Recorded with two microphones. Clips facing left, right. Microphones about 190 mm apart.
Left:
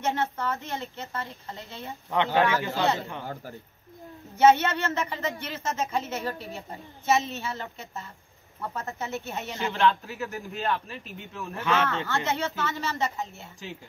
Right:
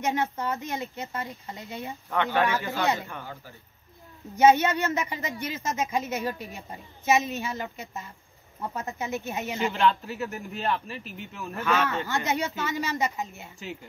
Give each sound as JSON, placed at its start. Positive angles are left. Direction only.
{"t": 0.0, "sound": "speech", "side_deg": -15}
{"t": 2.0, "sound": "speech", "side_deg": 20}
{"t": 2.8, "sound": "speech", "side_deg": -15}
{"t": 4.4, "sound": "speech", "side_deg": -15}
{"t": 9.5, "sound": "a man's voice", "side_deg": 0}
{"t": 11.6, "sound": "speech", "side_deg": 20}
{"t": 11.9, "sound": "speech", "side_deg": -15}